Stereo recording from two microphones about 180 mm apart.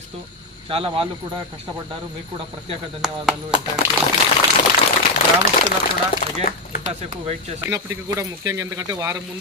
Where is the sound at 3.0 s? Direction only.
5° right (ahead or behind).